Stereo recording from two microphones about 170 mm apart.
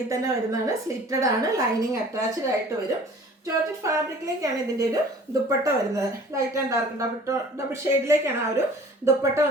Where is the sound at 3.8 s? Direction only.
20° right (ahead or behind).